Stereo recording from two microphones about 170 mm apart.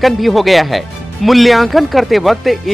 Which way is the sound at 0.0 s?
Centre (ahead or behind).